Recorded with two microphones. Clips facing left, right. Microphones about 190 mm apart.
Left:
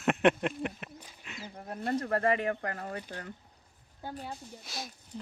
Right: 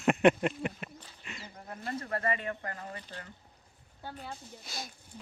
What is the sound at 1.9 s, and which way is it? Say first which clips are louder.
Speech: left 5 dB; 40° left (ahead or behind).